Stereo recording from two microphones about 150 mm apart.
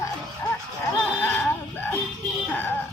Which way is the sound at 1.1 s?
10° left (ahead or behind).